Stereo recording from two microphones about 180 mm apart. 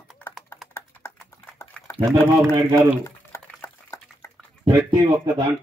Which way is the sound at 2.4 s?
15° right (ahead or behind).